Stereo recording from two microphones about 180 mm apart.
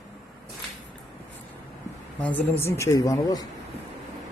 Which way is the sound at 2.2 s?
10° left (ahead or behind).